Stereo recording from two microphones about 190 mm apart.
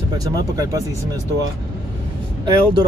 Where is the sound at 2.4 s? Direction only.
20° right (ahead or behind).